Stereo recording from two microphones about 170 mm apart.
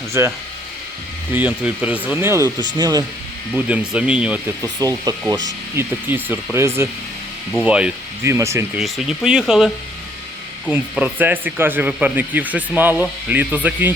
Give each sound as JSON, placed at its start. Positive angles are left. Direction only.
{"t": 0.1, "sound": "speech", "side_deg": -15}
{"t": 3.5, "sound": "speech", "side_deg": -5}
{"t": 4.8, "sound": "speech", "side_deg": -20}
{"t": 8.8, "sound": "speech", "side_deg": 0}